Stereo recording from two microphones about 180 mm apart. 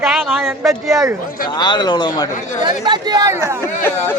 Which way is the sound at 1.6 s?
25° left (ahead or behind).